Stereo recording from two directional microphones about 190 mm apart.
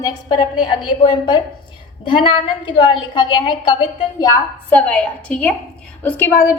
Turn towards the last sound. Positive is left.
turn(degrees=15)  # may be behind; listen again after turning